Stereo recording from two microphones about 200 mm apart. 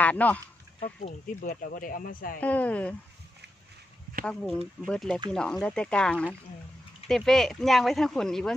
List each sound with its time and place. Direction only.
0.0 s speech: 5° left (ahead or behind)
0.7 s speech: 35° left (ahead or behind)
2.4 s speech: 5° left (ahead or behind)
4.3 s speech: 5° left (ahead or behind)